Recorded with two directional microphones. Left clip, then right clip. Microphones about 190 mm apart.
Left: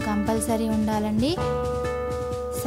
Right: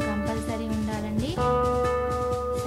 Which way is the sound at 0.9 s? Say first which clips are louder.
Left 6 dB; 50° left (ahead or behind).